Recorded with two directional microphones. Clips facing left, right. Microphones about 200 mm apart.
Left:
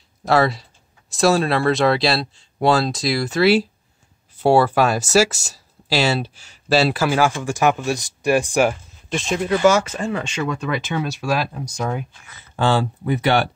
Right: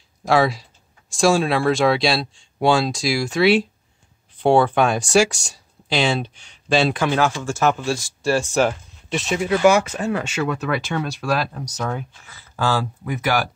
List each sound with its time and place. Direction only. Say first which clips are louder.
0.2 s speech: even; centre (ahead or behind)
9.1 s speech: even; 5° right (ahead or behind); by 12.4 s 10° left (ahead or behind)
12.5 s speech: left 3 dB; 25° left (ahead or behind)